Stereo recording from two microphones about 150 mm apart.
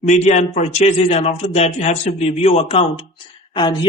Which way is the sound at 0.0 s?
50° left (ahead or behind).